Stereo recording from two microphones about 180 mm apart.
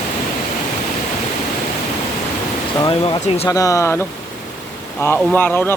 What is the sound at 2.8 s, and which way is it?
Speech, 30° left (ahead or behind).